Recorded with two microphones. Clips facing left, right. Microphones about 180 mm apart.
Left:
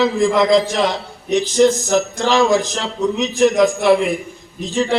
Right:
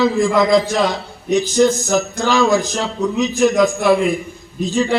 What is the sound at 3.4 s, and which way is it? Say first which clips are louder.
Speech: left 1 dB; 25° left (ahead or behind).